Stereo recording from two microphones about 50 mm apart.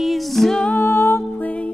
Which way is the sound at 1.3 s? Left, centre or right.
Left.